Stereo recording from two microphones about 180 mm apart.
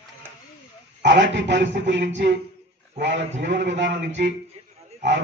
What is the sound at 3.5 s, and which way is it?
Speech, 80° right.